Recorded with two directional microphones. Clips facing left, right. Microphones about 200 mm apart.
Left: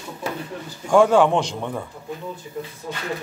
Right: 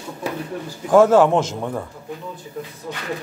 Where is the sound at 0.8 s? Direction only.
5° right (ahead or behind).